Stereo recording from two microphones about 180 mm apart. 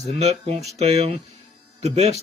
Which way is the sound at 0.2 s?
35° right (ahead or behind).